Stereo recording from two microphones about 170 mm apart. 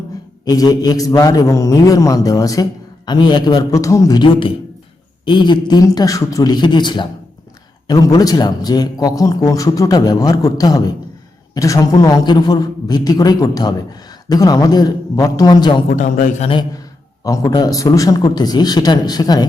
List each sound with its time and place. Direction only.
0.4 s a man's voice: 20° left (ahead or behind)
15.9 s a man's voice: 45° left (ahead or behind)
16.5 s a man's voice: 25° left (ahead or behind)